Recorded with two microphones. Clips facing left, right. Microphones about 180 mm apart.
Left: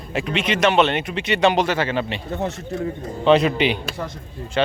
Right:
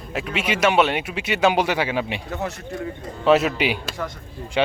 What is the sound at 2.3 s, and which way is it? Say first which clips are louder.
Speech: left 3 dB; 35° left (ahead or behind).